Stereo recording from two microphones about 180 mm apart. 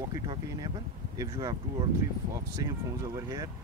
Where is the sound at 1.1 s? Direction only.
20° right (ahead or behind).